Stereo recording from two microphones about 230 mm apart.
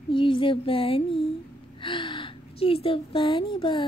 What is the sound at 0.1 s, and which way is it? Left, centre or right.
A woman's voice, left.